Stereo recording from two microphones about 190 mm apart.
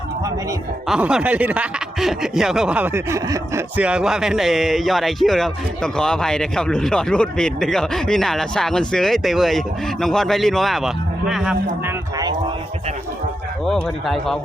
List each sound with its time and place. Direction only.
0.9 s speech: 5° right (ahead or behind)
13.7 s speech: centre (ahead or behind)